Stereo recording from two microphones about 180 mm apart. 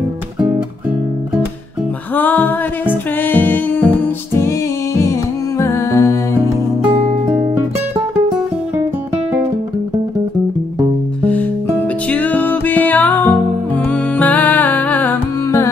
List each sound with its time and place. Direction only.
2.1 s music: 10° left (ahead or behind)
6.9 s music: 35° right (ahead or behind)
12.1 s music: 10° left (ahead or behind)